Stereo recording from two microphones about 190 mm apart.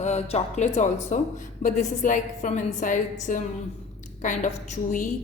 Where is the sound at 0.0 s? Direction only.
35° left (ahead or behind).